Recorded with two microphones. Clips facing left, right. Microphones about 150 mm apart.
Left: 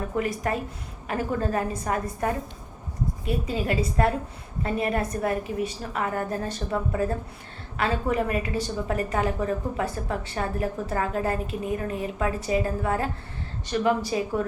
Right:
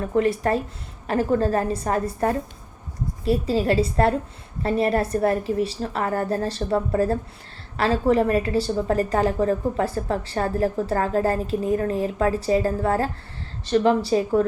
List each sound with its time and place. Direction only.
0.2 s a woman's voice: 30° right (ahead or behind)